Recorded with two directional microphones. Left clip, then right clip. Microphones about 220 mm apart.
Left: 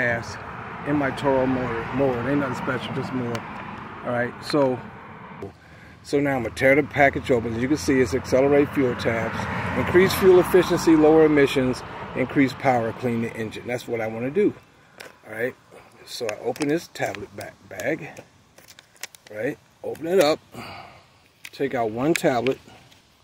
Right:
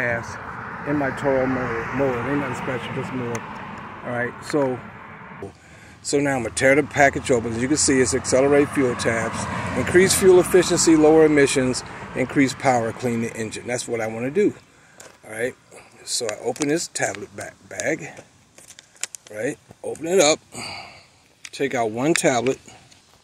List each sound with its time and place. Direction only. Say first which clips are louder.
0.0 s speech: even; 5° left (ahead or behind)
0.4 s a sound: right 2 dB; 25° left (ahead or behind)
1.2 s speech: right 1 dB; 15° left (ahead or behind)
2.5 s speech: even; 45° right (ahead or behind)
4.1 s speech: even; 5° left (ahead or behind)
6.0 s speech: right 1 dB; centre (ahead or behind)
9.3 s speech: even; 10° left (ahead or behind)
19.3 s speech: right 1 dB; centre (ahead or behind)